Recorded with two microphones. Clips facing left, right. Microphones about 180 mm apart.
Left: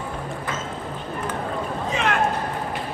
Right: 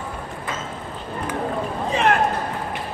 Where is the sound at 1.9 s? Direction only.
35° right (ahead or behind).